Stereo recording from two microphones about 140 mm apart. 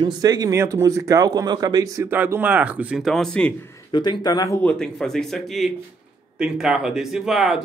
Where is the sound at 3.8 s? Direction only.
30° left (ahead or behind).